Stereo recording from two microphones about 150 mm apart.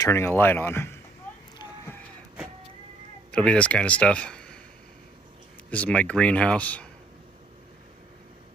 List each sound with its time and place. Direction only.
0.0 s speech: 15° left (ahead or behind)
3.3 s speech: 5° left (ahead or behind)
5.7 s speech: 10° left (ahead or behind)